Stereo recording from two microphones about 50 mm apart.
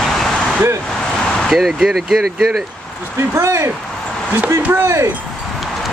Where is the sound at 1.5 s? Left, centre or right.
Centre.